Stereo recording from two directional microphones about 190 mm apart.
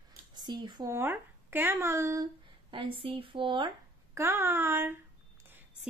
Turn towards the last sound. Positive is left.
turn(degrees=-10)  # may be behind; listen again after turning